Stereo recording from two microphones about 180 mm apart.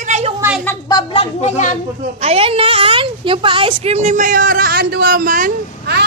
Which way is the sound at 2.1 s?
35° right (ahead or behind).